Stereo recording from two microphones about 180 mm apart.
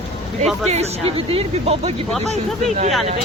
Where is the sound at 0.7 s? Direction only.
35° right (ahead or behind).